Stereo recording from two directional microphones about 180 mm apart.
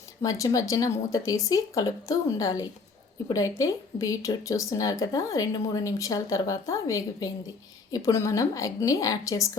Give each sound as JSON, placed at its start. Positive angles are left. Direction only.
{"t": 0.2, "sound": "speech", "side_deg": 20}